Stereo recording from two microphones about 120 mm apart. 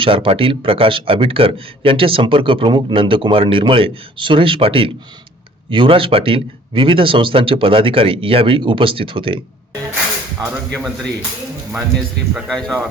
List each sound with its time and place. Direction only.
0.0 s a man's voice: 45° right (ahead or behind)
10.7 s speech: centre (ahead or behind)